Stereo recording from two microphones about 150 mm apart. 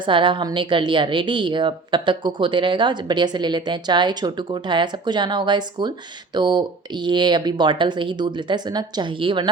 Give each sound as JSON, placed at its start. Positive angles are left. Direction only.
{"t": 0.0, "sound": "a woman's voice", "side_deg": -35}